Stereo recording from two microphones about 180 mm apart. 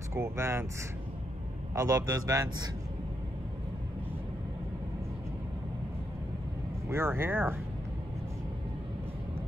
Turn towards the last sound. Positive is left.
turn(degrees=-10)  # may be behind; listen again after turning